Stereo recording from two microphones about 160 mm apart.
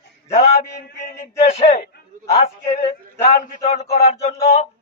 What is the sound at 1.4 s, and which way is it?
Speech, 45° left (ahead or behind).